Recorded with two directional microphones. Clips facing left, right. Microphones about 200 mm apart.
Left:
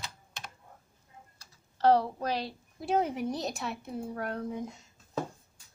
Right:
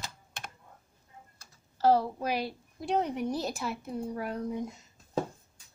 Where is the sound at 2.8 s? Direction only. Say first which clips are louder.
Left 1 dB; 5° left (ahead or behind).